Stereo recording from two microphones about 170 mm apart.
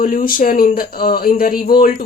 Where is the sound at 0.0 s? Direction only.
55° left (ahead or behind).